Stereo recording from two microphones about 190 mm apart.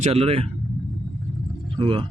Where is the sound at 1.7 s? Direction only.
30° right (ahead or behind).